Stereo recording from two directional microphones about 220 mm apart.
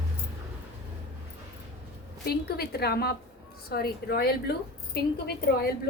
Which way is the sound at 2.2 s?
45° left (ahead or behind).